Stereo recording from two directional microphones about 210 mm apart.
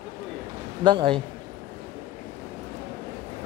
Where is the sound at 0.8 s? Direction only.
25° right (ahead or behind).